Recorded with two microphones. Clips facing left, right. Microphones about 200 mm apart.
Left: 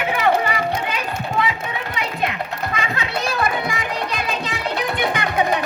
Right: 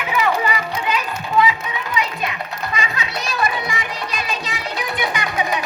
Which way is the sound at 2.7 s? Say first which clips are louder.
Left 1 dB; 60° left (ahead or behind).